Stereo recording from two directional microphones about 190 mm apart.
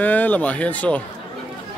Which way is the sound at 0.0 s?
10° left (ahead or behind).